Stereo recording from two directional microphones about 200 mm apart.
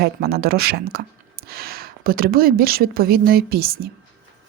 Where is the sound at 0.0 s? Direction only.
50° right (ahead or behind).